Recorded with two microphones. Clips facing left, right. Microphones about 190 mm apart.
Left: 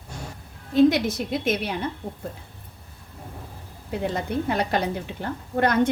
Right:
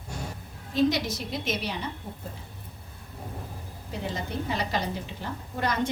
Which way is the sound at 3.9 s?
60° left (ahead or behind).